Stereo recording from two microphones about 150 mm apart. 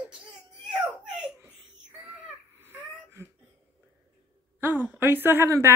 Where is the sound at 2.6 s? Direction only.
15° right (ahead or behind).